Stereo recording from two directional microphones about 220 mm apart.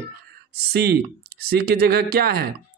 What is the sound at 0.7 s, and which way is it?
Speech, 45° right (ahead or behind).